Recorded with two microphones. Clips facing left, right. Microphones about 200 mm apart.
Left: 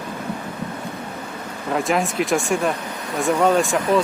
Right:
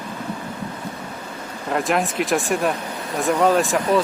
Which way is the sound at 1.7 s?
Centre (ahead or behind).